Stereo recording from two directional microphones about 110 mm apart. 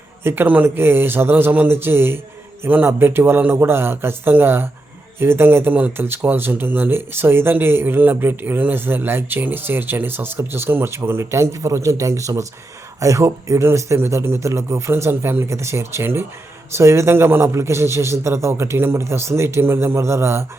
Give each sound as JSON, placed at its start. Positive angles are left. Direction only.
{"t": 0.3, "sound": "speech", "side_deg": -15}